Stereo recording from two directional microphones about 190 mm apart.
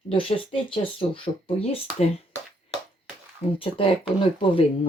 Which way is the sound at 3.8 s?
30° left (ahead or behind).